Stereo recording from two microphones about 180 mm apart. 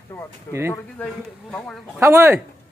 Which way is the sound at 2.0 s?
15° right (ahead or behind).